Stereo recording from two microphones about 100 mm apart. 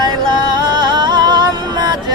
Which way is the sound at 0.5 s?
50° right (ahead or behind).